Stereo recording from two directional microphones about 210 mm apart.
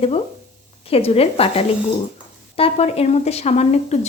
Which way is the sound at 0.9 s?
30° left (ahead or behind).